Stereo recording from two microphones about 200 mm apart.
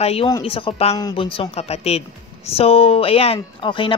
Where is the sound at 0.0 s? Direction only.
30° left (ahead or behind).